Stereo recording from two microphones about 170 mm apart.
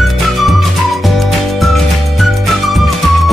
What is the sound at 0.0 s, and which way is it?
Music, centre (ahead or behind).